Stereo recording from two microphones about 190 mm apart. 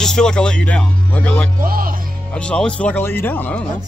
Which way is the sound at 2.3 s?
5° left (ahead or behind).